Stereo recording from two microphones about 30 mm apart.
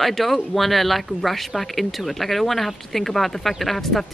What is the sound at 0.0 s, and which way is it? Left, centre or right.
Speech, centre.